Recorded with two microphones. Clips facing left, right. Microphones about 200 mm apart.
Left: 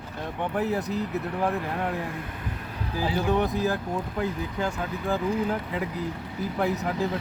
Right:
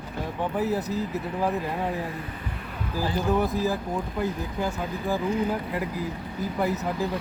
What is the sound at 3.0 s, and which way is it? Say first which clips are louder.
Speech: even; centre (ahead or behind).